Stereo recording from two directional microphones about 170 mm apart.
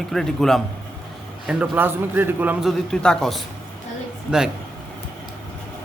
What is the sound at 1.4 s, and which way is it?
A man's voice, 10° right (ahead or behind).